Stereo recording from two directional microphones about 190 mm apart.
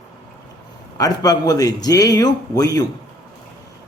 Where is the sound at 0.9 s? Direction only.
20° left (ahead or behind).